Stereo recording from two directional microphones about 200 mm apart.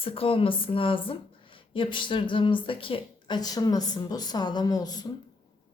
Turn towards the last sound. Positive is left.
turn(degrees=20)  # may be behind; listen again after turning